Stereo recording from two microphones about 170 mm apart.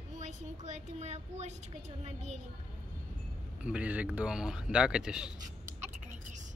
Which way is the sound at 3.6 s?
5° right (ahead or behind).